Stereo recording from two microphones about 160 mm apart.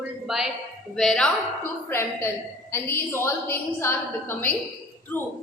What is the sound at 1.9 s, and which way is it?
A woman's voice, 15° left (ahead or behind).